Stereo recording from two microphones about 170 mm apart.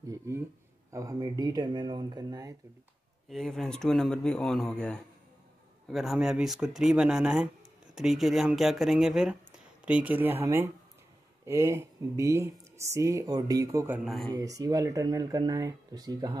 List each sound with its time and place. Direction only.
0.9 s speech: 20° right (ahead or behind)
3.3 s speech: centre (ahead or behind)
14.3 s speech: 20° right (ahead or behind)